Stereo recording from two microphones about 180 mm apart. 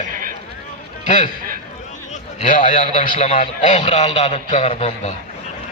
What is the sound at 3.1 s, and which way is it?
A man's voice, 40° left (ahead or behind).